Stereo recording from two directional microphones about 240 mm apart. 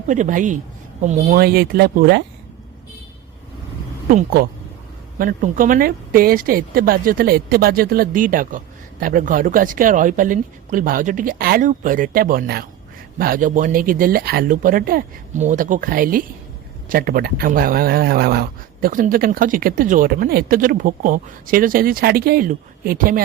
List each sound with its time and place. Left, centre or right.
0.1 s speech: right
4.1 s speech: right